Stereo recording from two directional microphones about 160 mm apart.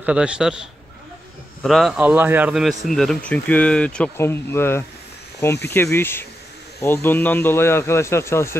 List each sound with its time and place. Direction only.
0.0 s a man's voice: 5° right (ahead or behind); by 8.5 s 15° left (ahead or behind)